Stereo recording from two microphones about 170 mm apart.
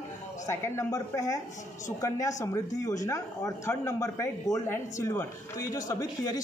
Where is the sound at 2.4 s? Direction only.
20° left (ahead or behind).